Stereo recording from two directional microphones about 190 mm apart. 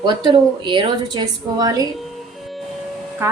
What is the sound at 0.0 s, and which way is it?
A woman's voice, 25° right (ahead or behind).